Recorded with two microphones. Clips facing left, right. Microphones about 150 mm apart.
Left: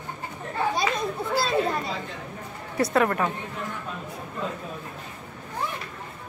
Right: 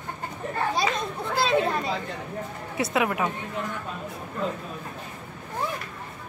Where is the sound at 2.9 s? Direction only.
5° right (ahead or behind).